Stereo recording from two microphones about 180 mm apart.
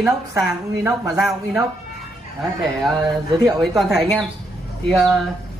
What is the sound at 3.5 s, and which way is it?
Speech, centre (ahead or behind).